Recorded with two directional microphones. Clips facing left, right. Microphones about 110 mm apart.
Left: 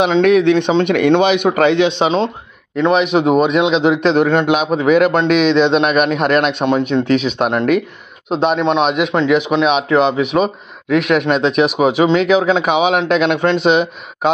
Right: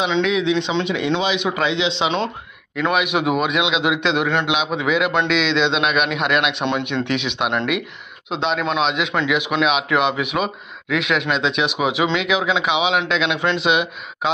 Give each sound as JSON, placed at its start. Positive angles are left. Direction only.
{"t": 0.0, "sound": "a man's voice", "side_deg": 55}
{"t": 2.0, "sound": "a man's voice", "side_deg": 35}
{"t": 8.5, "sound": "a man's voice", "side_deg": 30}
{"t": 8.8, "sound": "a man's voice", "side_deg": 45}
{"t": 9.3, "sound": "a man's voice", "side_deg": 35}